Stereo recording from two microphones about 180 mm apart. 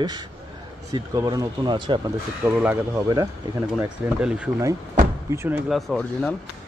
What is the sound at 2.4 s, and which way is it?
Speech, 10° right (ahead or behind).